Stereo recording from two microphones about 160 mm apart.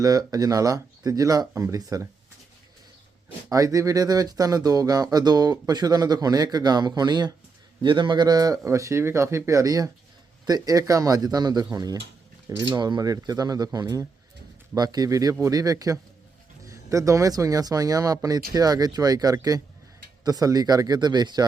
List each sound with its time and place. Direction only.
0.0 s speech: 25° right (ahead or behind)
3.5 s speech: 20° right (ahead or behind)